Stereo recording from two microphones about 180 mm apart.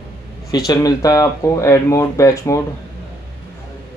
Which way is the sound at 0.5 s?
20° left (ahead or behind).